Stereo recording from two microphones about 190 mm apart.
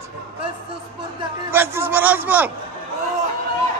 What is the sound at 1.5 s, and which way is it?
A man's voice, 10° right (ahead or behind).